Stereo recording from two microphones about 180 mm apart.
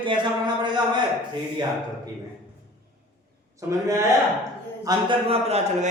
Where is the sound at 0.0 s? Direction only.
25° right (ahead or behind).